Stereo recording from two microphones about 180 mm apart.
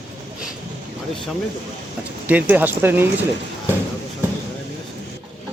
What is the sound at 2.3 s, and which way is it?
Speech, 10° right (ahead or behind).